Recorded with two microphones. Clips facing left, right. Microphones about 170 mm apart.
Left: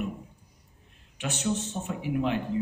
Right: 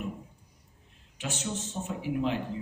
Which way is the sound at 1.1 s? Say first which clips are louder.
Left 5 dB; 65° left (ahead or behind).